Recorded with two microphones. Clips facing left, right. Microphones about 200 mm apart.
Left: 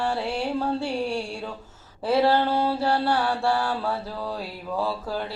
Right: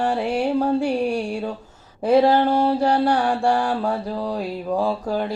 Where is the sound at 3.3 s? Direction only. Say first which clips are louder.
Right 4 dB; 15° right (ahead or behind).